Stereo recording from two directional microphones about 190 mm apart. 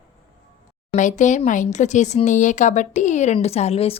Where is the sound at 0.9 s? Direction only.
40° left (ahead or behind).